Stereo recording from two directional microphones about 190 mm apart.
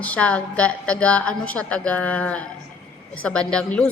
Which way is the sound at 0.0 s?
5° left (ahead or behind).